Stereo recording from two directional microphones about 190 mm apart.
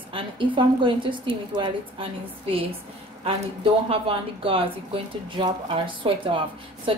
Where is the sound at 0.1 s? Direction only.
25° right (ahead or behind).